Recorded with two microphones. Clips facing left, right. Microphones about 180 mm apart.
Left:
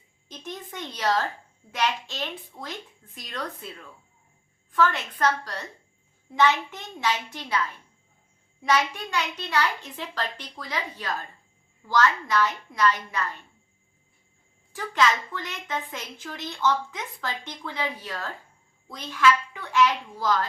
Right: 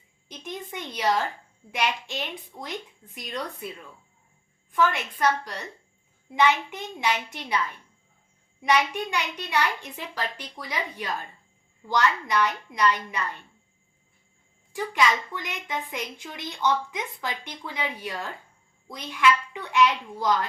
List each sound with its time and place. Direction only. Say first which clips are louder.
0.3 s a sound: right 1 dB; 15° right (ahead or behind)
1.7 s a woman's voice: even; 15° right (ahead or behind)
4.7 s a woman's voice: even; 15° right (ahead or behind)
8.6 s a woman's voice: right 1 dB; 15° right (ahead or behind)
14.7 s a woman's voice: even; 15° right (ahead or behind)